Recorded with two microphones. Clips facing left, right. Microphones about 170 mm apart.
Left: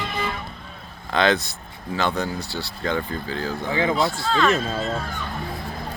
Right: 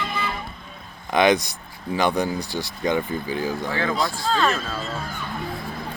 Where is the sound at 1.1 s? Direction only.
15° right (ahead or behind).